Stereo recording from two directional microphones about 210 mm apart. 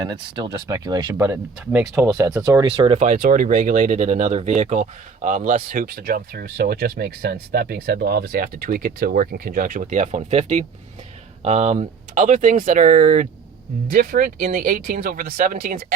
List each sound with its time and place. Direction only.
0.0 s speech: 20° right (ahead or behind)
1.8 s speech: centre (ahead or behind)
2.1 s speech: 15° right (ahead or behind); by 15.8 s 45° right (ahead or behind)